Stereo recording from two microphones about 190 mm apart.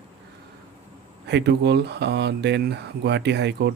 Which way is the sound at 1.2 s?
60° right (ahead or behind).